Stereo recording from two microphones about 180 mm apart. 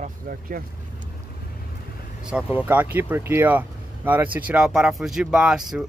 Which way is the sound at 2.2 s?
5° right (ahead or behind).